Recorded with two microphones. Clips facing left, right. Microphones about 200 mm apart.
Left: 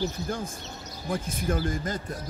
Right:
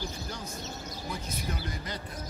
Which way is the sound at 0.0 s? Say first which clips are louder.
Left 8 dB; 50° left (ahead or behind).